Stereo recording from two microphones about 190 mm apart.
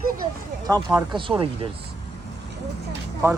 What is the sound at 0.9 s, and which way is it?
Speech, 25° right (ahead or behind).